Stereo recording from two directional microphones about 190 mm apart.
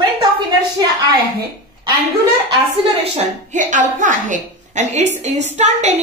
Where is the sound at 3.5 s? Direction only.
40° right (ahead or behind).